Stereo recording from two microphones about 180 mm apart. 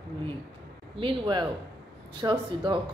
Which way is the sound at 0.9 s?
25° right (ahead or behind).